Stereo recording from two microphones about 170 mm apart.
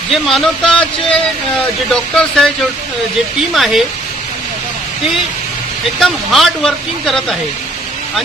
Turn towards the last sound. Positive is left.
turn(degrees=0)  # may be behind; listen again after turning